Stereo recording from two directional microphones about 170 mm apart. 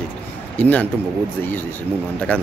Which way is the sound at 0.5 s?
10° left (ahead or behind).